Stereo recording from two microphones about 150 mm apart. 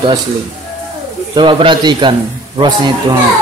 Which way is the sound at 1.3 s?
30° right (ahead or behind).